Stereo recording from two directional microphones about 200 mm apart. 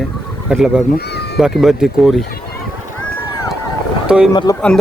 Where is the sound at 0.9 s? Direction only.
55° left (ahead or behind).